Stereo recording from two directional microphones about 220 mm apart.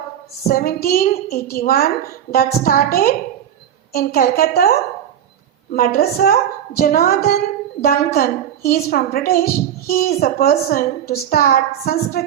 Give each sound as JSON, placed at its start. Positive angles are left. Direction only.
{"t": 0.4, "sound": "a woman's voice", "side_deg": 40}